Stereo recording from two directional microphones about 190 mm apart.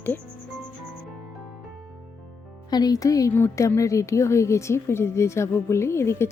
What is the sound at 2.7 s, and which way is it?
Speech, 20° left (ahead or behind).